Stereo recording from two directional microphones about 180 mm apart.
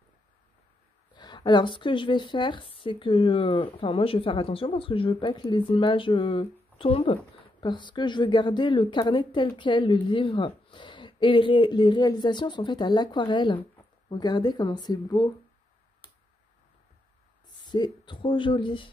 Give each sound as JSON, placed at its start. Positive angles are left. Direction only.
{"t": 1.1, "sound": "a woman's voice", "side_deg": 25}
{"t": 17.5, "sound": "speech", "side_deg": 25}